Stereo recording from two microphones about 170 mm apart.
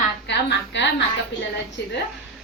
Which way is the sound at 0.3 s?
90° left.